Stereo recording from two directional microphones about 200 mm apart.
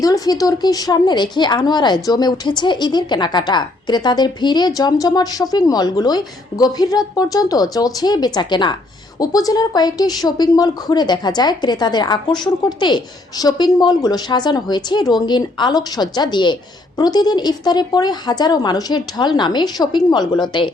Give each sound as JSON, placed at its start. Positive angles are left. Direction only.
{"t": 0.0, "sound": "a woman's voice", "side_deg": 20}